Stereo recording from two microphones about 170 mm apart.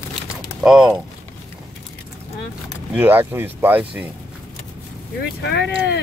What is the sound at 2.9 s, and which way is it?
Speech, 10° right (ahead or behind).